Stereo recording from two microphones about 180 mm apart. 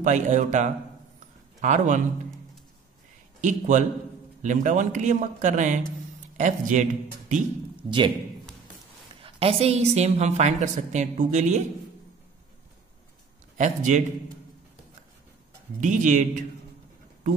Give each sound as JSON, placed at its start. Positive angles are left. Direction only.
{"t": 0.0, "sound": "speech", "side_deg": -40}
{"t": 3.3, "sound": "speech", "side_deg": -45}
{"t": 7.8, "sound": "a man's voice", "side_deg": -30}
{"t": 9.2, "sound": "a woman's voice", "side_deg": -35}
{"t": 13.6, "sound": "speech", "side_deg": -45}
{"t": 15.8, "sound": "speech", "side_deg": -45}